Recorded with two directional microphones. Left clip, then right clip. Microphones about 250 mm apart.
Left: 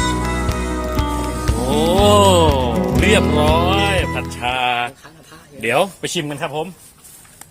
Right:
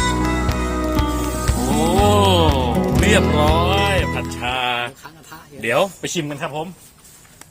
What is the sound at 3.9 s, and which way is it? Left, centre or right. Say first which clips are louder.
Music: left 1 dB; left.